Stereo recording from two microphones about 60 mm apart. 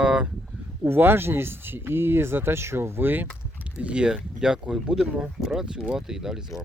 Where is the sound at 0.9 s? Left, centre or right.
Right.